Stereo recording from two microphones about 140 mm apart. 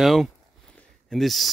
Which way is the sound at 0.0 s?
Centre (ahead or behind).